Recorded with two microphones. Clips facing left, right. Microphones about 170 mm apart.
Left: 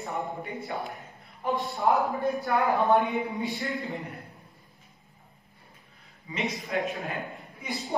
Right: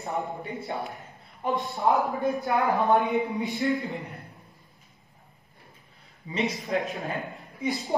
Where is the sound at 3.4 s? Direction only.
20° right (ahead or behind).